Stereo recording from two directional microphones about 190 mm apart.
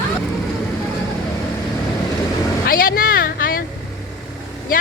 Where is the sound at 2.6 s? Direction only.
50° left (ahead or behind).